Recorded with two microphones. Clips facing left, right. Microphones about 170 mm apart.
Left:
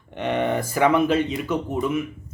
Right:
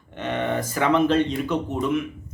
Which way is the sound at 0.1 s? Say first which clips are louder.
Left 3 dB; 10° left (ahead or behind).